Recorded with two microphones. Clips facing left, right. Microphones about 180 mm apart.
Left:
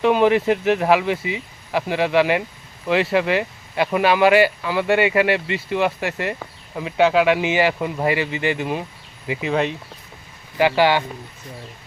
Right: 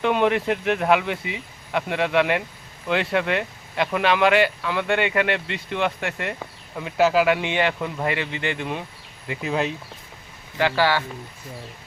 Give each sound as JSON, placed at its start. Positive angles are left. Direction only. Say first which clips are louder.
{"t": 0.0, "sound": "speech", "louder": "left 4 dB", "side_deg": 0}
{"t": 10.6, "sound": "speech", "louder": "left 4 dB", "side_deg": 15}